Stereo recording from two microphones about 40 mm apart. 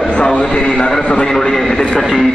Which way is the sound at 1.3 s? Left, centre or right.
Centre.